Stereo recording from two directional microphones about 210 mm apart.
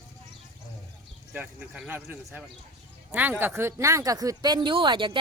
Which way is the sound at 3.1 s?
10° right (ahead or behind).